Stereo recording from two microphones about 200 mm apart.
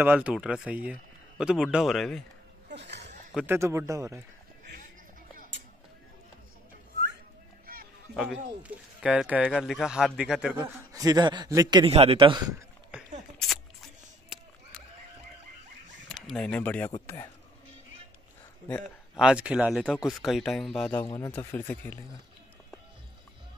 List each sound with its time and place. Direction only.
0.0 s speech: 5° right (ahead or behind)
2.7 s a sound: 60° right (ahead or behind)
3.3 s speech: 10° right (ahead or behind)
7.6 s honk: 45° right (ahead or behind)
8.6 s speech: 5° right (ahead or behind)
13.4 s a sound: centre (ahead or behind)
16.3 s speech: 5° left (ahead or behind)
18.7 s speech: centre (ahead or behind)